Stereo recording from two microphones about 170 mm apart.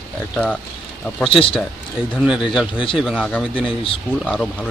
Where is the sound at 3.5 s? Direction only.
30° left (ahead or behind).